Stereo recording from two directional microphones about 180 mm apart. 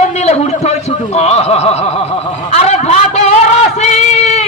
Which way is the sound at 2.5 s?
35° left (ahead or behind).